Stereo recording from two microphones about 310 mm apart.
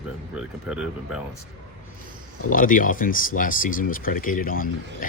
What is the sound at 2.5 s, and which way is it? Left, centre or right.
Speech, left.